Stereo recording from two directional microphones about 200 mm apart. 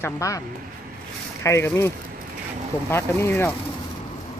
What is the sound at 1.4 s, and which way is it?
Speech, 15° left (ahead or behind).